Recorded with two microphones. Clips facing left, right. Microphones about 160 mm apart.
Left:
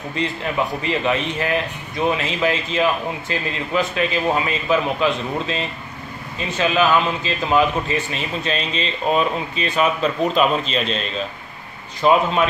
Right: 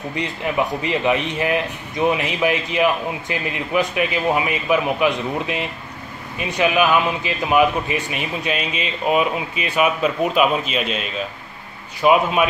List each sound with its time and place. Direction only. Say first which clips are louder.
0.1 s speech: left 1 dB; 20° right (ahead or behind)